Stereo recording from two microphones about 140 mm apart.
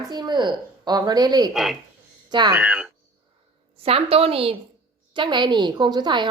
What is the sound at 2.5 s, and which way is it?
Speech, 10° right (ahead or behind).